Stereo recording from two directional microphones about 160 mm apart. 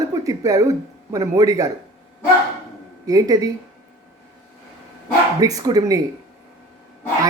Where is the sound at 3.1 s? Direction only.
20° right (ahead or behind).